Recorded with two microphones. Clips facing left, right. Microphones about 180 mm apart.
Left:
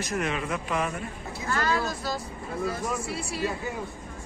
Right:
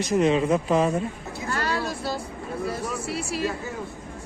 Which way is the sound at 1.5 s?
30° right (ahead or behind).